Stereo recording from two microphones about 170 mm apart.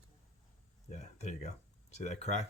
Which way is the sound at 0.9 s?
45° left (ahead or behind).